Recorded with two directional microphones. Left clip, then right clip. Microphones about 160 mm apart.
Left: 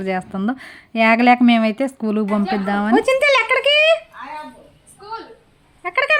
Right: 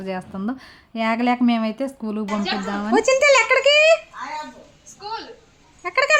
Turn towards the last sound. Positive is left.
turn(degrees=-5)  # may be behind; listen again after turning